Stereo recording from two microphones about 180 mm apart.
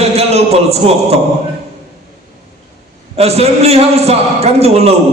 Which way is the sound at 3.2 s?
35° right (ahead or behind).